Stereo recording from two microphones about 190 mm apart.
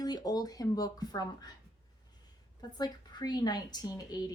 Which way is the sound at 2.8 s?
20° left (ahead or behind).